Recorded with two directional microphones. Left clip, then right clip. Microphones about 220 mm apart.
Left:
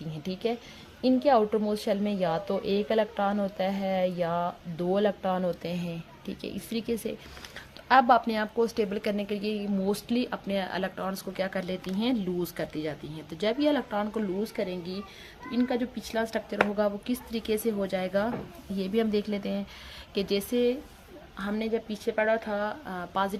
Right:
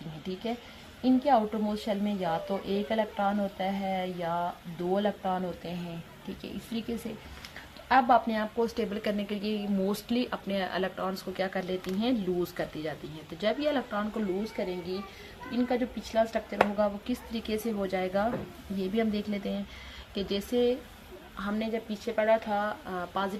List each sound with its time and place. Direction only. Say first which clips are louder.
1.0 s a woman's voice: left 2 dB; 50° left (ahead or behind); by 23.3 s 30° left (ahead or behind)